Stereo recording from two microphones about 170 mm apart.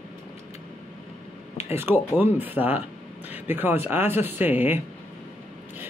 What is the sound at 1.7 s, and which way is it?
Speech, 10° right (ahead or behind).